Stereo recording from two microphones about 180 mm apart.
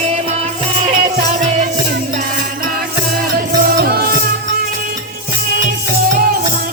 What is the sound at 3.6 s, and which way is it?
Music, 55° right (ahead or behind).